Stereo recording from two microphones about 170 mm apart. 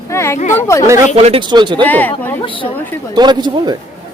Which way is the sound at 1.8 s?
10° left (ahead or behind).